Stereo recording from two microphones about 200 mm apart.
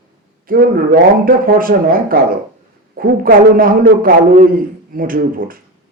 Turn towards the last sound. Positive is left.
turn(degrees=-45)  # may be behind; listen again after turning